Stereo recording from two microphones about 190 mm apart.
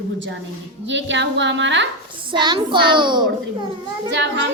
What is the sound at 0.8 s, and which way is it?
A woman's voice, 70° right (ahead or behind).